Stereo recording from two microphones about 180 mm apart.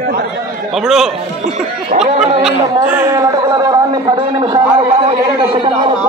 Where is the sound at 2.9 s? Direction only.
15° right (ahead or behind).